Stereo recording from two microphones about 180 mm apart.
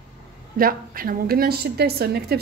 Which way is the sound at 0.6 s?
55° right (ahead or behind).